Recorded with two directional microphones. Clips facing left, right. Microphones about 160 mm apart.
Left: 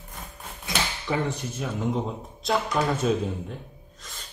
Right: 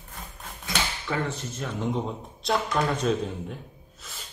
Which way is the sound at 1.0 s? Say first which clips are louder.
Left 2 dB; 15° left (ahead or behind).